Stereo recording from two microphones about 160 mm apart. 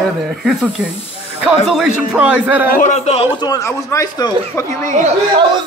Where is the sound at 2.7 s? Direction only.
50° left (ahead or behind).